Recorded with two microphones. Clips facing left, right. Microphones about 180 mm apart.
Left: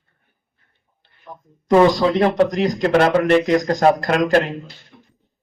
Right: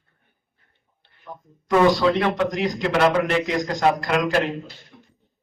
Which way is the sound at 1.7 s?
35° left (ahead or behind).